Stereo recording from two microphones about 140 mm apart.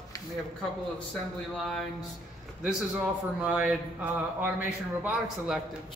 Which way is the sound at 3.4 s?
10° right (ahead or behind).